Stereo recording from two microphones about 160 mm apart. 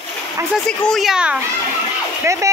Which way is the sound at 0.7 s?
Centre (ahead or behind).